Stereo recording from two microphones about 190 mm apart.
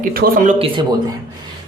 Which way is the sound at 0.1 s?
50° right (ahead or behind).